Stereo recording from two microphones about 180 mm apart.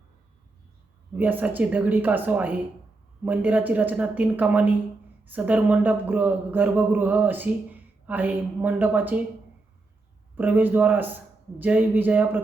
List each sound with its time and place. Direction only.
1.1 s a man's voice: 10° right (ahead or behind)
10.3 s a man's voice: 10° right (ahead or behind)